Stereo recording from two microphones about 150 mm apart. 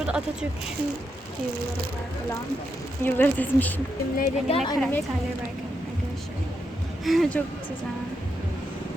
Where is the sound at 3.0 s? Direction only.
10° left (ahead or behind).